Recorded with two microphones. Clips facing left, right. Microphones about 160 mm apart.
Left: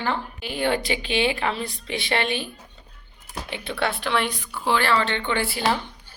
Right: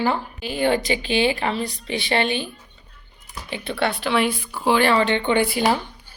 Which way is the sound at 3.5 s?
Centre (ahead or behind).